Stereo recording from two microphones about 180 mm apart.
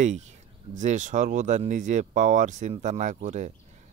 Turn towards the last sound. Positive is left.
turn(degrees=-45)  # may be behind; listen again after turning